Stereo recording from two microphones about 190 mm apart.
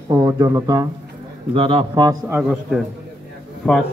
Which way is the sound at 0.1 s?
20° right (ahead or behind).